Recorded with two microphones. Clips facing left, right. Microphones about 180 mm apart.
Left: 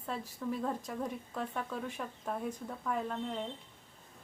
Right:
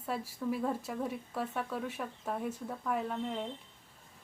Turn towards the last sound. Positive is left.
turn(degrees=-5)  # may be behind; listen again after turning